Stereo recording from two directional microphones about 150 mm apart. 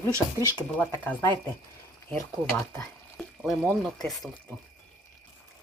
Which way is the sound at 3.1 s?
Centre (ahead or behind).